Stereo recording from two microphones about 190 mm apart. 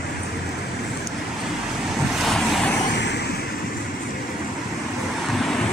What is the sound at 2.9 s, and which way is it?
Vehicle, 65° left (ahead or behind).